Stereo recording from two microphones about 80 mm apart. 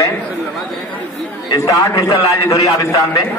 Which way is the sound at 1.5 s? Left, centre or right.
Left.